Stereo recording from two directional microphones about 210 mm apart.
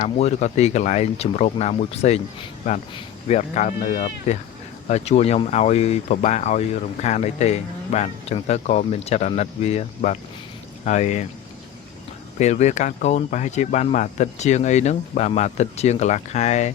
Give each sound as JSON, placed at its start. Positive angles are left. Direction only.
{"t": 0.0, "sound": "speech", "side_deg": 30}
{"t": 12.4, "sound": "speech", "side_deg": 35}